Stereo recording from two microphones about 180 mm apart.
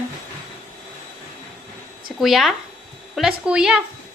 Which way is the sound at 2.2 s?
Centre (ahead or behind).